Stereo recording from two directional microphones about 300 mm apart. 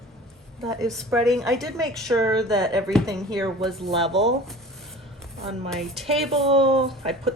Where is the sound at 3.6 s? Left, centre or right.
Centre.